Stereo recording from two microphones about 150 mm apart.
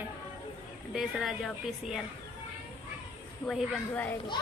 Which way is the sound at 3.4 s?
Centre (ahead or behind).